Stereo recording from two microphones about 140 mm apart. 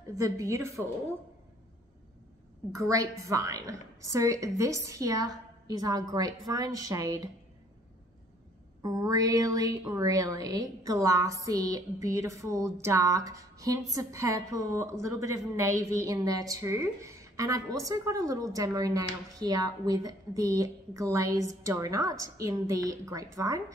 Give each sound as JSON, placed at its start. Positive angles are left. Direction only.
{"t": 0.1, "sound": "a woman's voice", "side_deg": -25}
{"t": 2.7, "sound": "a woman's voice", "side_deg": -25}
{"t": 8.8, "sound": "a woman's voice", "side_deg": -25}